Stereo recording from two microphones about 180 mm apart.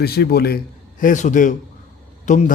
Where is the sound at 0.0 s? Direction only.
60° left (ahead or behind).